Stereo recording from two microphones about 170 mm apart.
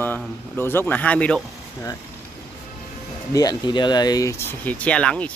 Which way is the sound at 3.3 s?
25° left (ahead or behind).